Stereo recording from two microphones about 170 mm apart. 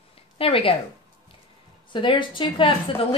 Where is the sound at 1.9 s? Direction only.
30° left (ahead or behind).